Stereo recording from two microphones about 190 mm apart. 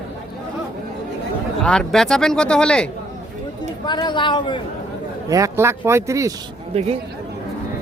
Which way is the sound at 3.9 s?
25° left (ahead or behind).